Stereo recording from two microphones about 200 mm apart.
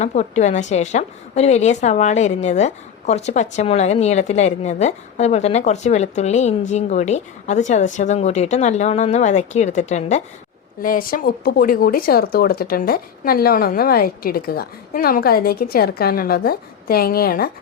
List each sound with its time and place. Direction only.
0.0 s a woman's voice: 35° left (ahead or behind)